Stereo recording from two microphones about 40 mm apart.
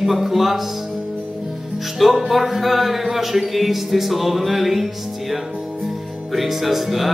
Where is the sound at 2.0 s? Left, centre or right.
Centre.